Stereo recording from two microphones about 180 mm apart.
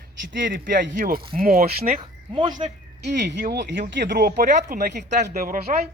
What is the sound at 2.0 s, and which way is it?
Speech, 25° right (ahead or behind).